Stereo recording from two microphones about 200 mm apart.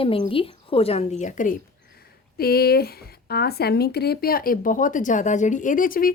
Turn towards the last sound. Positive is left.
turn(degrees=45)  # may be behind; listen again after turning